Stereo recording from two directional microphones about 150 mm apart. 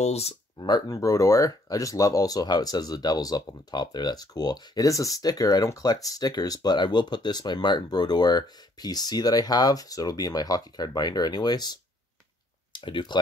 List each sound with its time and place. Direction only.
0.0 s speech: 45° left (ahead or behind)
0.6 s speech: 30° left (ahead or behind)